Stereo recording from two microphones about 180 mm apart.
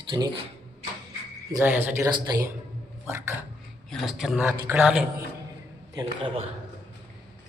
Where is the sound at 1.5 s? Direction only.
10° right (ahead or behind).